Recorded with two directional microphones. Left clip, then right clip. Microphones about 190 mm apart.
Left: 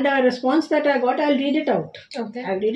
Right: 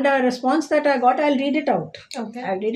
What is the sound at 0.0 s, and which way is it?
A woman's voice, 20° right (ahead or behind).